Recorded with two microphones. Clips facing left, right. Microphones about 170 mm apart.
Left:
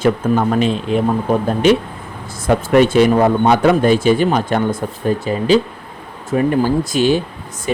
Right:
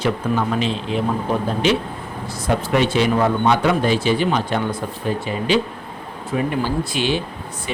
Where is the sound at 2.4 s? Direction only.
50° left (ahead or behind).